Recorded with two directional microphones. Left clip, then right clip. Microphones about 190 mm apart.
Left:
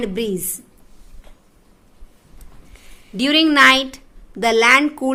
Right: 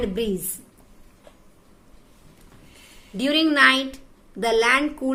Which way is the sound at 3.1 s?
45° left (ahead or behind).